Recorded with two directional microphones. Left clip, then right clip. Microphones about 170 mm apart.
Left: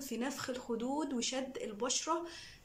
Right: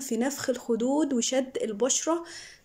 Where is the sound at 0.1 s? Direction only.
45° right (ahead or behind).